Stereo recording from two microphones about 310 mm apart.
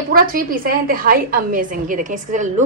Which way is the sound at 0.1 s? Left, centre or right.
Right.